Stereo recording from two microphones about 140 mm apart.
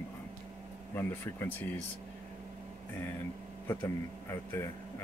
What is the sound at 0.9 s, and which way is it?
Speech, 15° left (ahead or behind).